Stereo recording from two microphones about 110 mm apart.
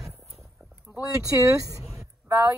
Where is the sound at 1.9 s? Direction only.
25° right (ahead or behind).